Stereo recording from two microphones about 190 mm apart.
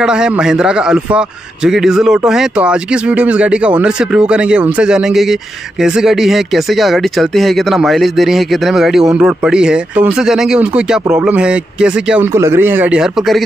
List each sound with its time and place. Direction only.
0.0 s a man's voice: 5° right (ahead or behind)